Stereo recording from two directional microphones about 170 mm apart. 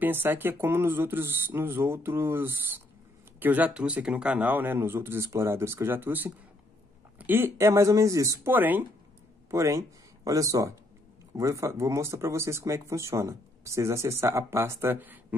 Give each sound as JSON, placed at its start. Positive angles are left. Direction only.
{"t": 0.0, "sound": "speech", "side_deg": -10}